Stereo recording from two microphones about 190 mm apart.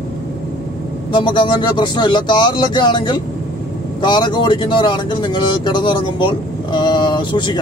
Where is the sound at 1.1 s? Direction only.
25° left (ahead or behind).